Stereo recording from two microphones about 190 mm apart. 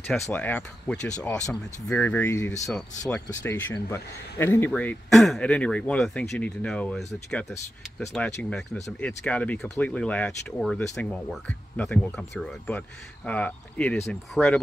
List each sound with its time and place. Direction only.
0.0 s speech: 10° left (ahead or behind)
8.4 s speech: 5° left (ahead or behind)